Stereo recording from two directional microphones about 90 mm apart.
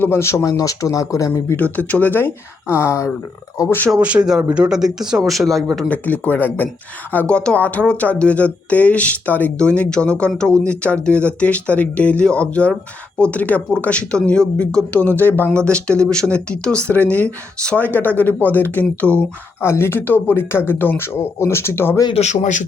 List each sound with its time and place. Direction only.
0.0 s speech: 30° left (ahead or behind)
1.5 s speech: 15° left (ahead or behind)
3.9 s speech: 10° right (ahead or behind)
5.9 s speech: 15° left (ahead or behind)
14.9 s speech: 20° left (ahead or behind)
19.6 s speech: 30° left (ahead or behind)